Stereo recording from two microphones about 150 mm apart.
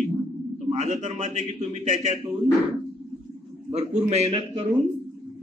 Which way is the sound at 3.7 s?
45° right (ahead or behind).